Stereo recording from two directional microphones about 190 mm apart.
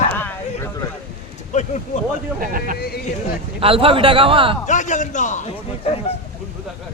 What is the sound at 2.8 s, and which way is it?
Speech, 55° left (ahead or behind).